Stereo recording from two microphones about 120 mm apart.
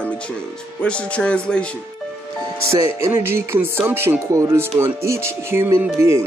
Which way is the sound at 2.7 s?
25° right (ahead or behind).